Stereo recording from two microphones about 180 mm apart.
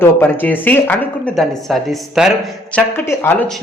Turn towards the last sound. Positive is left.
turn(degrees=15)  # may be behind; listen again after turning